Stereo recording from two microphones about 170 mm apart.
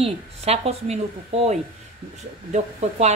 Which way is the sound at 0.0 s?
40° right (ahead or behind).